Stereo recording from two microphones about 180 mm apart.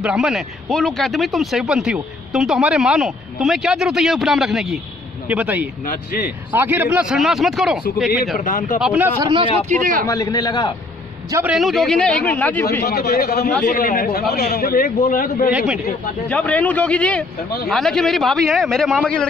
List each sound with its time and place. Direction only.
0.0 s speech: 5° right (ahead or behind)
5.9 s a man's voice: 50° left (ahead or behind)
6.5 s speech: 10° right (ahead or behind)
8.4 s a man's voice: 45° left (ahead or behind)
8.8 s speech: 10° right (ahead or behind)
9.3 s speech: 30° right (ahead or behind)
9.8 s a man's voice: 50° right (ahead or behind)
10.0 s a man's voice: 20° left (ahead or behind)
11.4 s speech: centre (ahead or behind)
12.8 s a man's voice: 60° left (ahead or behind)
13.7 s a man's voice: 50° left (ahead or behind)
15.5 s speech: 5° right (ahead or behind)
16.3 s a man's voice: 5° left (ahead or behind)